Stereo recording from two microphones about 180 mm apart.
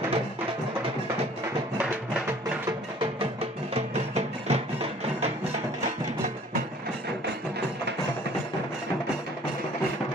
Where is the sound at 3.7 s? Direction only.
35° right (ahead or behind).